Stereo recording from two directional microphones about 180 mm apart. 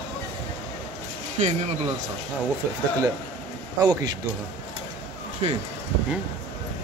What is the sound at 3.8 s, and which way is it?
Speech, 25° right (ahead or behind).